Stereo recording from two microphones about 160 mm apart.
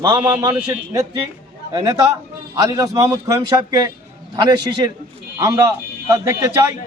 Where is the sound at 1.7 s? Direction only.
25° right (ahead or behind).